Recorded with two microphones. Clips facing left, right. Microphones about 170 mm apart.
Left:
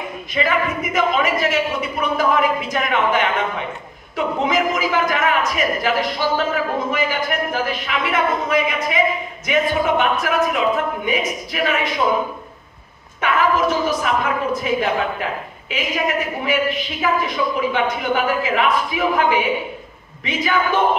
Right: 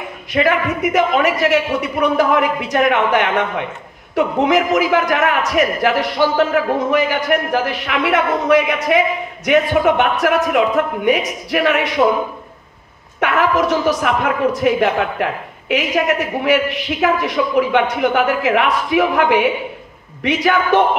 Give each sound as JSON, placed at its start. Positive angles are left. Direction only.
{"t": 0.3, "sound": "a woman's voice", "side_deg": -65}
{"t": 13.2, "sound": "a woman's voice", "side_deg": -70}